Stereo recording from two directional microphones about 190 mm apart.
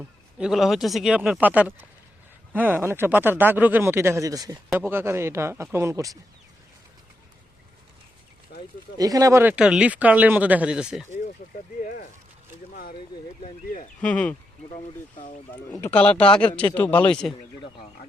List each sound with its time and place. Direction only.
0.3 s speech: 5° right (ahead or behind)
8.5 s a sound: 60° left (ahead or behind)
9.0 s speech: 20° right (ahead or behind)
11.8 s a sound: 50° left (ahead or behind)
14.0 s speech: 5° left (ahead or behind)
15.8 s speech: 10° left (ahead or behind)